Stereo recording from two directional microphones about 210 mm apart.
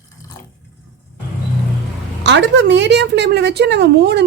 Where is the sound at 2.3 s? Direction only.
60° right (ahead or behind).